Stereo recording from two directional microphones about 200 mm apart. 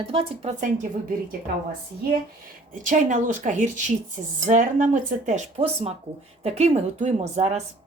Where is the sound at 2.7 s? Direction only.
40° right (ahead or behind).